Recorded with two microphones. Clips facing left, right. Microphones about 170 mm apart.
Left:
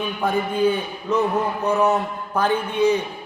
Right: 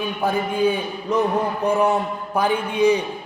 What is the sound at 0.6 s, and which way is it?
A man's voice, 10° right (ahead or behind).